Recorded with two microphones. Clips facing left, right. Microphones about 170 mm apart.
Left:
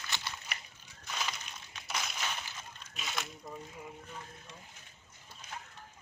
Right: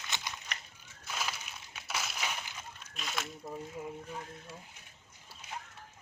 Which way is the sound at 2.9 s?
Centre (ahead or behind).